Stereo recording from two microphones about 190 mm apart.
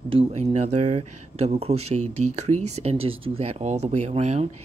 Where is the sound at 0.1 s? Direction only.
30° right (ahead or behind).